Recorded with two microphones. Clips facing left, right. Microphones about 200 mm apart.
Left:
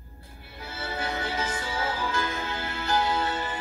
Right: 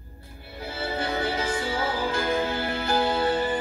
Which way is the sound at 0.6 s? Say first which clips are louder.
Right 4 dB; 30° right (ahead or behind).